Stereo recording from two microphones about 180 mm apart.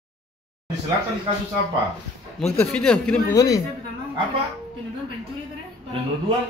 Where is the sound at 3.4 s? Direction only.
20° left (ahead or behind).